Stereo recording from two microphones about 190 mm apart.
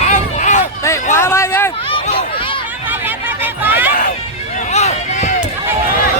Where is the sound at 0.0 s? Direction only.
40° left (ahead or behind).